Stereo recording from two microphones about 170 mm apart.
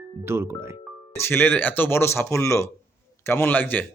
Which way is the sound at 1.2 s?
15° left (ahead or behind).